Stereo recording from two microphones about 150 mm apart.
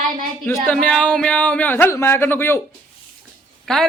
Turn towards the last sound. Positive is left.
turn(degrees=5)  # may be behind; listen again after turning